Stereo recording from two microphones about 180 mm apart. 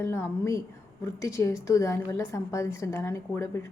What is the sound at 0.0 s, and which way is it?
A woman's voice, 15° left (ahead or behind).